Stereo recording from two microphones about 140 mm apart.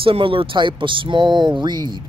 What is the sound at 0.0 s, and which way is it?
Speech, 40° right (ahead or behind).